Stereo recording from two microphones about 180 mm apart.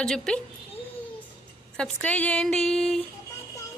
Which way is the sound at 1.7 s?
5° left (ahead or behind).